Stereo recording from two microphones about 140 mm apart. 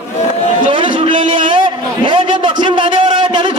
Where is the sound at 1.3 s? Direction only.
35° right (ahead or behind).